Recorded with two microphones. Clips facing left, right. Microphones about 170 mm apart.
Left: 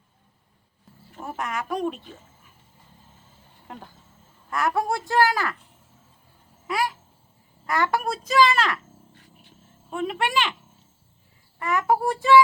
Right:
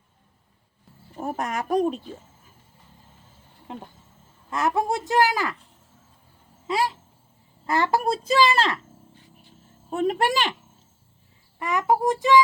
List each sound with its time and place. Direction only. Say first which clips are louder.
1.2 s speech: right 3 dB; 40° right (ahead or behind)
3.7 s a woman's voice: right 3 dB; 20° right (ahead or behind)
6.7 s a sound: right 2 dB; 25° right (ahead or behind)
7.7 s a woman's voice: right 2 dB; 25° right (ahead or behind)
9.9 s speech: right 3 dB; 40° right (ahead or behind)
11.6 s a child's voice: right 1 dB; 15° right (ahead or behind)